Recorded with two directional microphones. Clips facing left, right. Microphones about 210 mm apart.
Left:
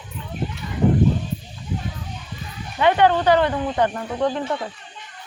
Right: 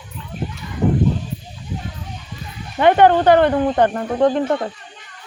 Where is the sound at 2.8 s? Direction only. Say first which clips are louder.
Right 4 dB; 50° right (ahead or behind).